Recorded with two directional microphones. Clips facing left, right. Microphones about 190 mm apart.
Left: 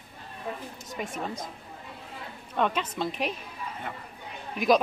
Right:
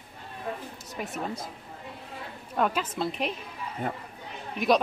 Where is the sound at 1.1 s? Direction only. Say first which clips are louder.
Right 3 dB; 5° right (ahead or behind).